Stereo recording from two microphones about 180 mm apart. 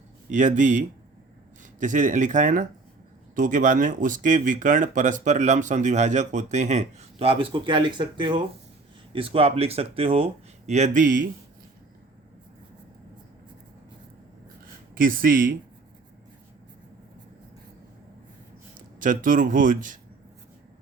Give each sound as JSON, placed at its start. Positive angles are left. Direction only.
{"t": 0.3, "sound": "speech", "side_deg": -45}
{"t": 1.8, "sound": "speech", "side_deg": -45}
{"t": 14.9, "sound": "speech", "side_deg": -50}
{"t": 18.9, "sound": "speech", "side_deg": -50}